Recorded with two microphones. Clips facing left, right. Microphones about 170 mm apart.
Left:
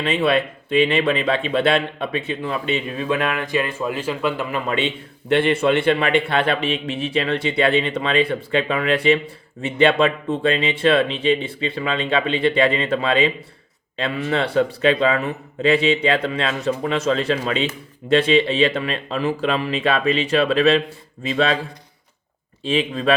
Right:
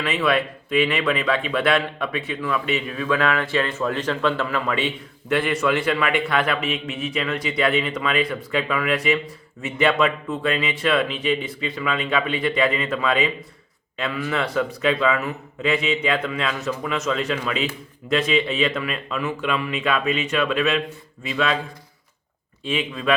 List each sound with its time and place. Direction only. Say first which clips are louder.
0.0 s speech: left 3 dB; 25° left (ahead or behind)
22.6 s speech: left 4 dB; 30° left (ahead or behind)